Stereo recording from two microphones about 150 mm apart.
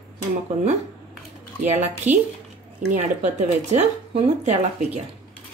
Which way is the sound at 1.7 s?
50° right (ahead or behind).